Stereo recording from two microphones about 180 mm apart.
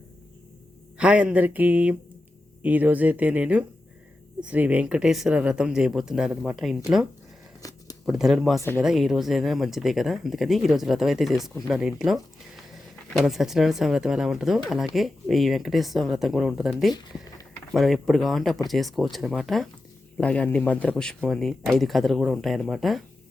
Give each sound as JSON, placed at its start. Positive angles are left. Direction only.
{"t": 0.9, "sound": "speech", "side_deg": -5}